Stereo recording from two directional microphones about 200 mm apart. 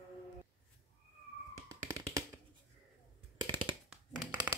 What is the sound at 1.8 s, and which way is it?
Tap, 15° right (ahead or behind).